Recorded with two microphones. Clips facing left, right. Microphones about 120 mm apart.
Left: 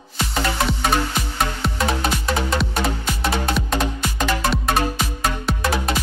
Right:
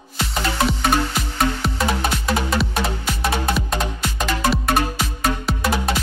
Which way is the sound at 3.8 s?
Centre (ahead or behind).